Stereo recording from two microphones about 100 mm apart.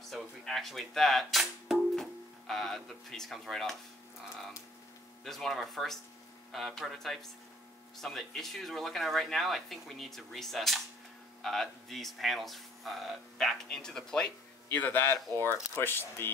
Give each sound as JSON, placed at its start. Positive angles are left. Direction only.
{"t": 0.1, "sound": "speech", "side_deg": 0}
{"t": 5.2, "sound": "speech", "side_deg": 0}